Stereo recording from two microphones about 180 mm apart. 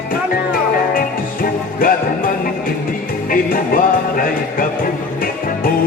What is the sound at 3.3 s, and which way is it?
Music, 50° left (ahead or behind).